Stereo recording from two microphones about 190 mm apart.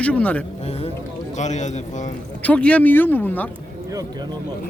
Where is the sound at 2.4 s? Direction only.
5° left (ahead or behind).